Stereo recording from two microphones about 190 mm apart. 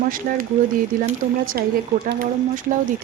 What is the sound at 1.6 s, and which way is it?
Speech, 50° right (ahead or behind).